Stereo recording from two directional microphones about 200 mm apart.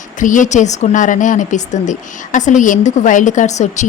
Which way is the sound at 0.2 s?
40° left (ahead or behind).